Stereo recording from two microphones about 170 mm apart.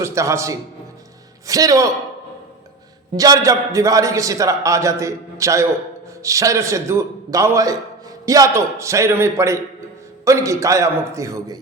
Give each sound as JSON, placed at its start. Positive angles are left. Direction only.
{"t": 0.0, "sound": "a man's voice", "side_deg": -15}
{"t": 3.2, "sound": "a man's voice", "side_deg": -20}